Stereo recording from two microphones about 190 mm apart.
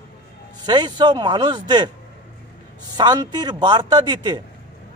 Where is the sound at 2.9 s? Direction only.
20° right (ahead or behind).